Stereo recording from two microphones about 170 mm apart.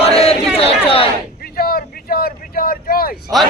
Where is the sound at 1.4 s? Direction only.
60° left (ahead or behind).